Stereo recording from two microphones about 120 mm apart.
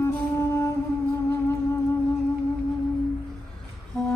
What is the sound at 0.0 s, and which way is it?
Music, 20° left (ahead or behind).